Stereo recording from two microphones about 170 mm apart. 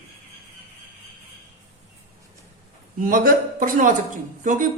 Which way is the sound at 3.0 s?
55° right (ahead or behind).